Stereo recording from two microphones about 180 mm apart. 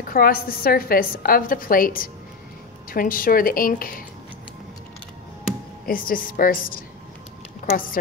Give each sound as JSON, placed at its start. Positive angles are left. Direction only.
{"t": 0.1, "sound": "a woman's voice", "side_deg": 55}
{"t": 5.9, "sound": "a woman's voice", "side_deg": 50}